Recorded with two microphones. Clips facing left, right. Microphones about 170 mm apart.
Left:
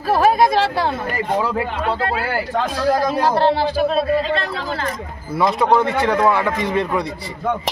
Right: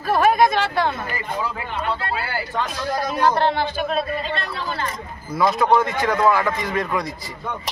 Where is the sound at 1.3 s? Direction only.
80° left.